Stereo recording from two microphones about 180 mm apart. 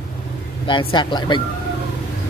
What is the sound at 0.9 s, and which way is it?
Speech, 25° left (ahead or behind).